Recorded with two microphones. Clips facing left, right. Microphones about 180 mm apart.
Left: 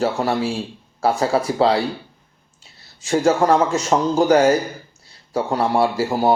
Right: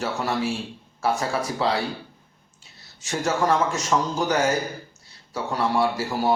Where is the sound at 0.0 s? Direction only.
30° left (ahead or behind).